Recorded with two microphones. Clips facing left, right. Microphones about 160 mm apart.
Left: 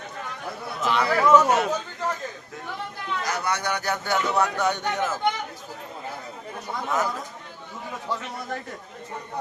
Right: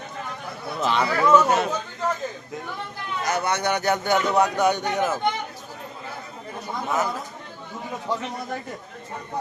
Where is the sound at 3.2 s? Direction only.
25° right (ahead or behind).